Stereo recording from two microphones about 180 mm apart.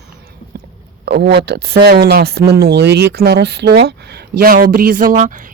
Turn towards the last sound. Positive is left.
turn(degrees=-45)  # may be behind; listen again after turning